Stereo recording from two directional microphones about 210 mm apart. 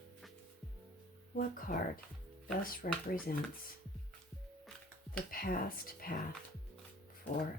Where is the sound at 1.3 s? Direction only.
40° left (ahead or behind).